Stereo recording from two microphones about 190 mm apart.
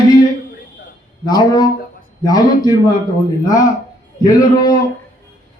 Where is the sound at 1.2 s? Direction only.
20° left (ahead or behind).